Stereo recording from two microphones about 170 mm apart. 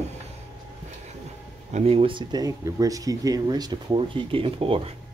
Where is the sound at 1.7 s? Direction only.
40° right (ahead or behind).